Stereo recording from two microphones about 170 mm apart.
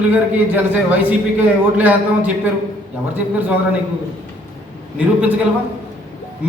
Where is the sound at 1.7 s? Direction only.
10° right (ahead or behind).